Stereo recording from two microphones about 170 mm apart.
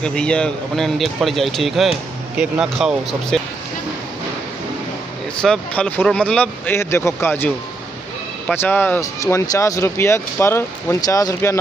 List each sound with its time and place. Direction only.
0.0 s speech: 5° left (ahead or behind)
5.4 s speech: 5° left (ahead or behind)